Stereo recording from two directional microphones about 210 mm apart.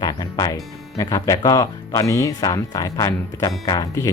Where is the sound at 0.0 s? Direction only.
20° left (ahead or behind).